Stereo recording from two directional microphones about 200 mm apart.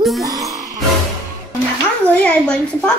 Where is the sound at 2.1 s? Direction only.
5° left (ahead or behind).